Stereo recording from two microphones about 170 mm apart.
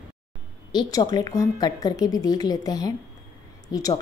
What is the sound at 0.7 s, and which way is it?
A woman's voice, 25° left (ahead or behind).